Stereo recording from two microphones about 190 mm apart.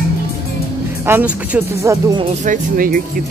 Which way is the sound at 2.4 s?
45° right (ahead or behind).